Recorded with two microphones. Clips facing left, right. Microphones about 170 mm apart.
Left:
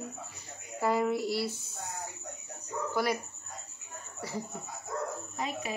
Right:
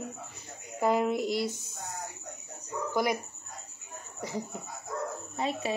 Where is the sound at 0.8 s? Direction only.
15° right (ahead or behind).